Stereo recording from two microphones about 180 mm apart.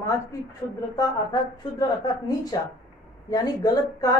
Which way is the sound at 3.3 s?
20° left (ahead or behind).